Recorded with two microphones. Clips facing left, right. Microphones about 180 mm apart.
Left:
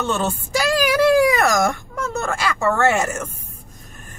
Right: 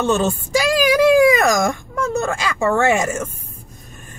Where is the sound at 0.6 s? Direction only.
15° right (ahead or behind).